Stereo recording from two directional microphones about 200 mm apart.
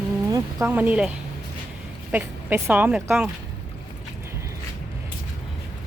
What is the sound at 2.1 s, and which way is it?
Speech, 10° right (ahead or behind).